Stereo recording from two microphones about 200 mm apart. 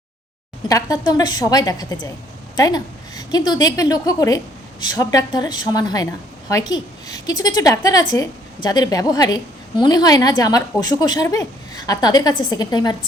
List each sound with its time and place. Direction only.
0.7 s a woman's voice: 15° left (ahead or behind)